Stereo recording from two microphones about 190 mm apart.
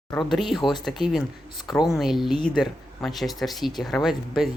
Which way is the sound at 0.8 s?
Centre (ahead or behind).